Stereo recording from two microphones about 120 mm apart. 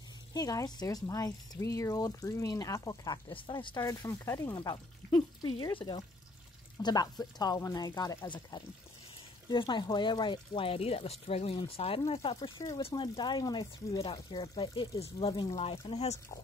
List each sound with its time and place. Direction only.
0.3 s speech: 30° left (ahead or behind)
3.8 s speech: 30° left (ahead or behind); by 15.5 s 45° left (ahead or behind)
15.9 s speech: 60° left (ahead or behind)